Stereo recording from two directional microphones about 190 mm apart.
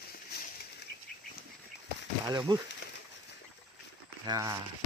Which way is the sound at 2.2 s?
20° right (ahead or behind).